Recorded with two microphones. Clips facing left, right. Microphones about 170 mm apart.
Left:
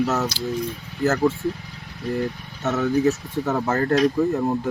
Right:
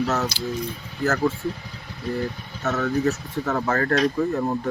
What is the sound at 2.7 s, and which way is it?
Speech, 20° left (ahead or behind).